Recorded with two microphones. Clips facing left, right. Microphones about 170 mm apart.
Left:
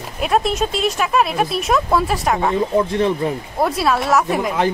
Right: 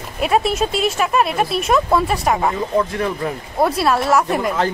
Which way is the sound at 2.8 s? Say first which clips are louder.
Left 2 dB; 25° left (ahead or behind).